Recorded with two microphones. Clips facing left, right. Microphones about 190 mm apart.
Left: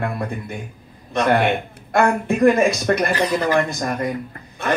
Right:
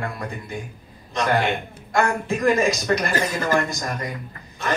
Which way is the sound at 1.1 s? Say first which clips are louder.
Left 4 dB; 60° left (ahead or behind).